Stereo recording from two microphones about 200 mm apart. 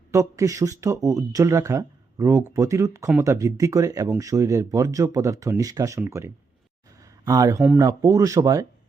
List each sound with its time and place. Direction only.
0.1 s speech: 15° right (ahead or behind)
7.0 s a sound: 15° right (ahead or behind)
7.8 s speech: 15° right (ahead or behind)